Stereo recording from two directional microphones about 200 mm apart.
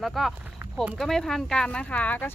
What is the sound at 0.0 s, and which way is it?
Speech, centre (ahead or behind).